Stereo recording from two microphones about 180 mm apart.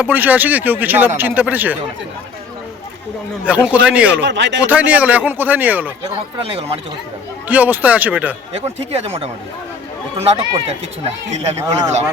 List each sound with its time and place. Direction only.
0.0 s speech: 10° right (ahead or behind)
3.4 s speech: 5° right (ahead or behind)
4.2 s a man's voice: 85° right
4.6 s speech: 10° right (ahead or behind)
6.5 s speech: 35° right (ahead or behind)
7.4 s speech: 10° right (ahead or behind)
9.0 s speech: 35° right (ahead or behind)